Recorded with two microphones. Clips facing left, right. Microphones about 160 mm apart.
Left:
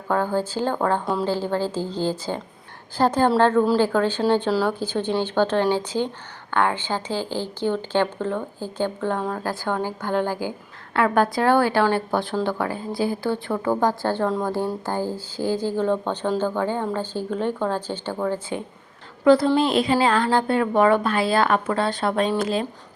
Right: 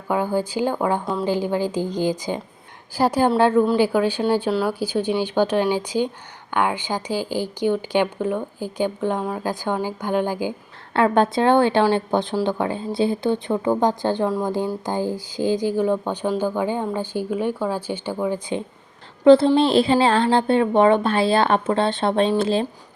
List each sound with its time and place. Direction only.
0.1 s a woman's voice: 10° right (ahead or behind)
19.2 s a woman's voice: 25° right (ahead or behind)